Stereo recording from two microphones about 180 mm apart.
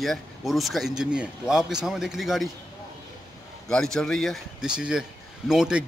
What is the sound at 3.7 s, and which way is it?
Speech, 5° left (ahead or behind).